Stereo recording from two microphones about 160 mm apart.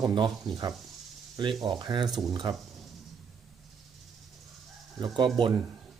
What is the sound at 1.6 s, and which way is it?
Speech, 30° right (ahead or behind).